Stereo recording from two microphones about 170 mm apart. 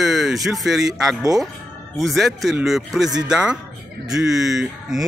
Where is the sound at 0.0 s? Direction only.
Centre (ahead or behind).